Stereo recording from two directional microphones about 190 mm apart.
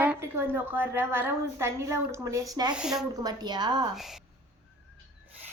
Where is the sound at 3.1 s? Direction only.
20° right (ahead or behind).